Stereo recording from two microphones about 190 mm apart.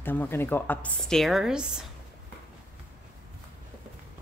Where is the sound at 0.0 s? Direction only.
10° left (ahead or behind).